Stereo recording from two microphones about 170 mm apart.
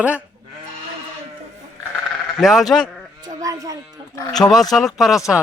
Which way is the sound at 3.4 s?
20° right (ahead or behind).